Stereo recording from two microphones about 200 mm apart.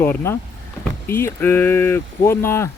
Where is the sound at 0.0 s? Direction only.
10° left (ahead or behind).